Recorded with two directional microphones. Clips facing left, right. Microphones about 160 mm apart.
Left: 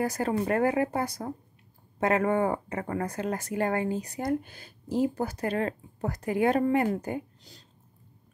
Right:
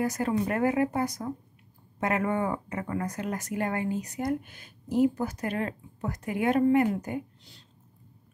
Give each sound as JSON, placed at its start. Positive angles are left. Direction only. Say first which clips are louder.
{"t": 0.0, "sound": "speech", "louder": "even", "side_deg": 30}